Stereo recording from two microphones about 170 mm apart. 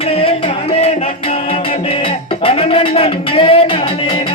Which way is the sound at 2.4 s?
30° left (ahead or behind).